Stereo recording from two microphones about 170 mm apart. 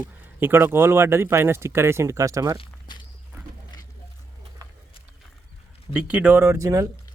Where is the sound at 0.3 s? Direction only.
15° right (ahead or behind).